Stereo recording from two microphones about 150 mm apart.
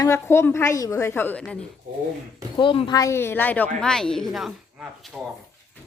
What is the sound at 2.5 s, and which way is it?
Speech, 35° left (ahead or behind).